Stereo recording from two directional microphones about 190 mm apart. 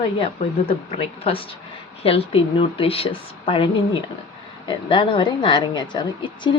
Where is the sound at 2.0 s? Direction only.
30° left (ahead or behind).